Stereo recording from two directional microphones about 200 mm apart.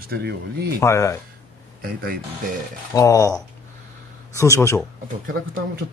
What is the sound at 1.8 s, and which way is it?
Speech, 50° right (ahead or behind).